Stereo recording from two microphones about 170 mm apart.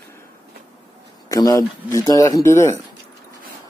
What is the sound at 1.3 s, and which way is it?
Speech, 20° left (ahead or behind).